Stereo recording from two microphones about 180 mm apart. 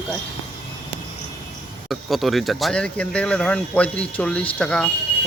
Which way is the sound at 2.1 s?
Centre (ahead or behind).